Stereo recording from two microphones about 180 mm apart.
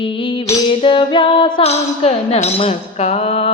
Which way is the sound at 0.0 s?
30° left (ahead or behind).